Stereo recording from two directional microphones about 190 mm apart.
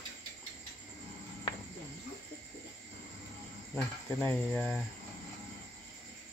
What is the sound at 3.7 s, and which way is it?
Speech, 5° left (ahead or behind).